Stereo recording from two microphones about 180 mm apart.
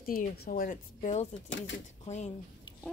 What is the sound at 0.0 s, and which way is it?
A woman's voice, 55° left (ahead or behind).